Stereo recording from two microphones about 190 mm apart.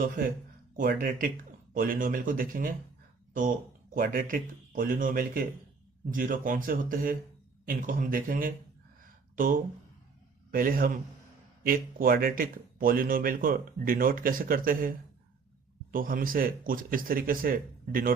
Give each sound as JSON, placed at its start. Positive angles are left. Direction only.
{"t": 0.8, "sound": "speech", "side_deg": -45}